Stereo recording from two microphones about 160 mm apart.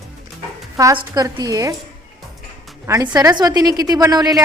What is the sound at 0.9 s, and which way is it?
Speech, 25° right (ahead or behind).